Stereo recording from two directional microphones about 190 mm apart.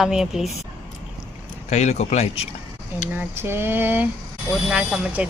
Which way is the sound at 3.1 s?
10° right (ahead or behind).